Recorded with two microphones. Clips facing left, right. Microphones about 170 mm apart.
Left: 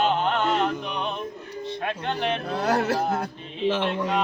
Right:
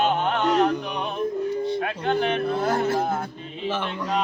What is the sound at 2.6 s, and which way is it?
Male singing, 80° left.